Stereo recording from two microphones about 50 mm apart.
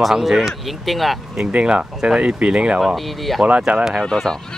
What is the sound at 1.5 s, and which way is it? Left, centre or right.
Speech, right.